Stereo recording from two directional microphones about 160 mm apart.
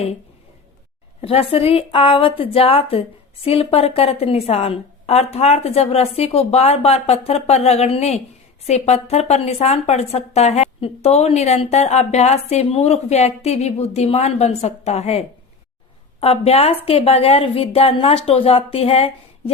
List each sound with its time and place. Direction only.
1.2 s a woman's voice: 35° left (ahead or behind)
16.2 s a woman's voice: 40° left (ahead or behind)